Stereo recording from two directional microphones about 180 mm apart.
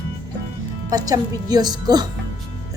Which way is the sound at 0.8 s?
20° right (ahead or behind).